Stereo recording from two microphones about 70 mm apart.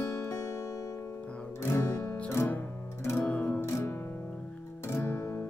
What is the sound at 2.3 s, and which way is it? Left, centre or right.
Music, left.